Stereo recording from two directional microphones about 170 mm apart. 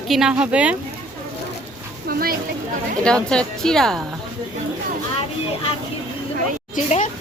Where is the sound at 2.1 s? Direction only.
60° right (ahead or behind).